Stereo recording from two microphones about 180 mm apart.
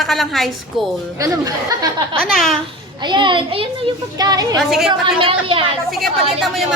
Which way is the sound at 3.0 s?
25° right (ahead or behind).